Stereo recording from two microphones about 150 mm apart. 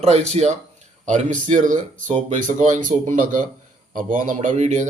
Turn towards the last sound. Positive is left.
turn(degrees=-50)  # may be behind; listen again after turning